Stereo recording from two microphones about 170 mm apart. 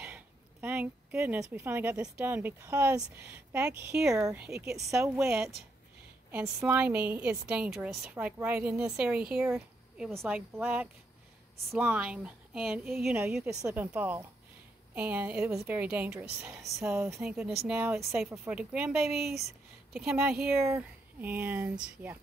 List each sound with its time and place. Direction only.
0.0 s a sound: 10° right (ahead or behind)
1.5 s a woman's voice: 10° right (ahead or behind)
4.1 s a woman's voice: 15° right (ahead or behind)
5.2 s a woman's voice: 5° right (ahead or behind)
16.7 s a woman's voice: 15° right (ahead or behind)
17.1 s a woman's voice: centre (ahead or behind)